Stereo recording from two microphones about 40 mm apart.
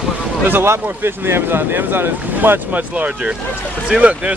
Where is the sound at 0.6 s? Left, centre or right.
Right.